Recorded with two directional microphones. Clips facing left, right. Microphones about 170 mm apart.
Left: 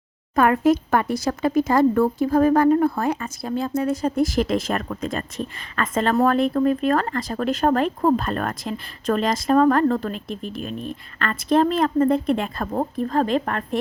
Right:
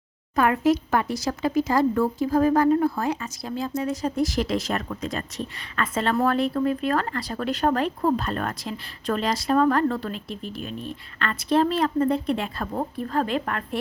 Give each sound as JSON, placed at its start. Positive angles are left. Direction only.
{"t": 0.3, "sound": "speech", "side_deg": 50}